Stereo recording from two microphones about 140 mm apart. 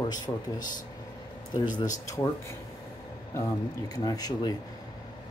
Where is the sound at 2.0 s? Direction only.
20° left (ahead or behind).